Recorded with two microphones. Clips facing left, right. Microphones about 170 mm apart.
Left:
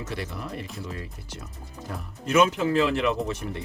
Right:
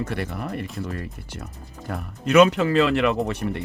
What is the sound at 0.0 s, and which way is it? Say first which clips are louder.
Speech: right 5 dB; 55° right (ahead or behind).